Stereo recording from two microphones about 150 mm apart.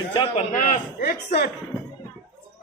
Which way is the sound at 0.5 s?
55° left (ahead or behind).